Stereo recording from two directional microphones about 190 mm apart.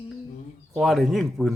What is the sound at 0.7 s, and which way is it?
Speech, centre (ahead or behind).